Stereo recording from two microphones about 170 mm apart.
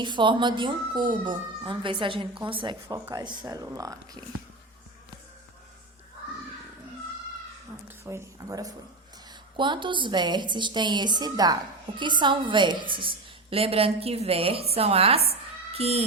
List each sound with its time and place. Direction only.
0.0 s speech: 30° right (ahead or behind)
7.9 s a woman's voice: 15° right (ahead or behind); by 16.0 s 35° right (ahead or behind)